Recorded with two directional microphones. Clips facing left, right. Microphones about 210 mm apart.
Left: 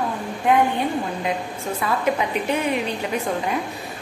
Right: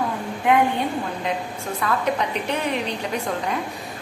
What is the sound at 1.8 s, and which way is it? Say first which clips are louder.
A woman's voice: left 1 dB; 5° left (ahead or behind).